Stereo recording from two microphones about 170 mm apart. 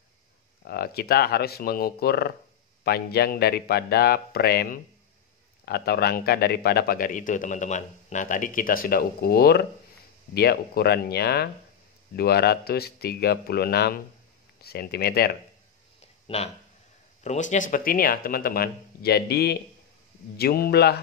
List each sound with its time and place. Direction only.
0.7 s a man's voice: 65° left (ahead or behind)
16.3 s speech: 30° left (ahead or behind)
17.2 s a man's voice: 45° left (ahead or behind); by 20.9 s 65° left (ahead or behind)